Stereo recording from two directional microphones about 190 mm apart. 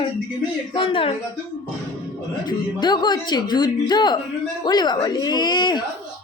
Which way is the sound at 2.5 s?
20° left (ahead or behind).